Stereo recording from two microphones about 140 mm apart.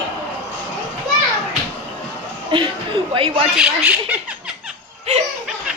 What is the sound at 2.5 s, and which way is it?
Speech, 35° right (ahead or behind).